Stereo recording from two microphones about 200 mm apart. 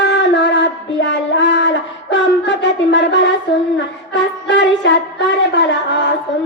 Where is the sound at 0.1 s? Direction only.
65° left (ahead or behind).